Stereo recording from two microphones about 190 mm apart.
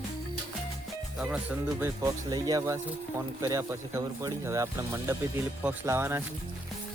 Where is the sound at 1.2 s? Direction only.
5° right (ahead or behind).